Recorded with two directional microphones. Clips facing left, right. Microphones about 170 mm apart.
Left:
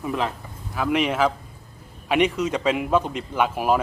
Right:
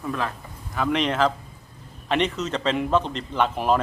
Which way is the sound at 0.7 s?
5° left (ahead or behind).